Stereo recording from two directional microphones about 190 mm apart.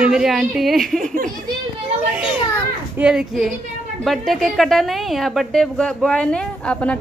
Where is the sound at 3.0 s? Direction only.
5° right (ahead or behind).